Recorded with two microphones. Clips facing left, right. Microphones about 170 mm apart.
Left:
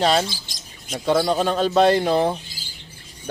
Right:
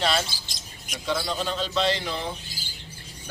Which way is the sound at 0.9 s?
55° left (ahead or behind).